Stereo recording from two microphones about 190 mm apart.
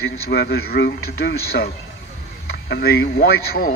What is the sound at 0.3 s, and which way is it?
A man's voice, 55° left (ahead or behind).